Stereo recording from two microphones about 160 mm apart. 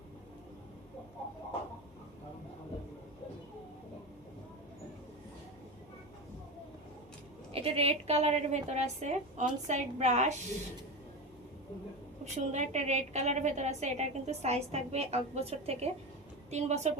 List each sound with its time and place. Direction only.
7.5 s a woman's voice: 35° right (ahead or behind)
12.2 s a woman's voice: 45° right (ahead or behind)